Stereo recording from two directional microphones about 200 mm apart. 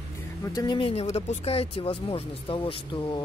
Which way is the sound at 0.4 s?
20° left (ahead or behind).